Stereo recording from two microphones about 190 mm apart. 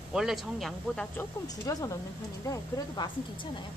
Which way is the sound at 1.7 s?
20° left (ahead or behind).